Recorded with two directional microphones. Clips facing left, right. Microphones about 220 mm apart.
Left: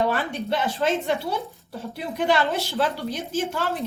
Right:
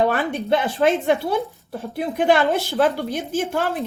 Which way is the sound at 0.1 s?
55° right (ahead or behind).